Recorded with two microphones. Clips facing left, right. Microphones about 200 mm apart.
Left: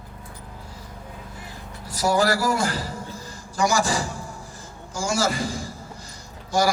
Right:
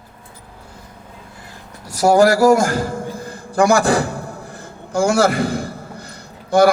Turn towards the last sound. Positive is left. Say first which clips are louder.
# right 9 dB
turn(degrees=-60)  # may be behind; listen again after turning